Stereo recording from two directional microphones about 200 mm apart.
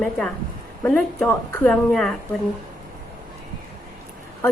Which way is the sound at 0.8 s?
5° left (ahead or behind).